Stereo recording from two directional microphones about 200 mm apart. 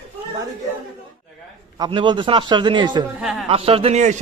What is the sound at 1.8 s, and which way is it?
A man's voice, 20° right (ahead or behind).